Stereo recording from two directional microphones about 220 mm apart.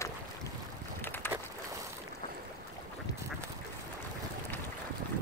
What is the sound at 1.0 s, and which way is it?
Boat, 10° left (ahead or behind).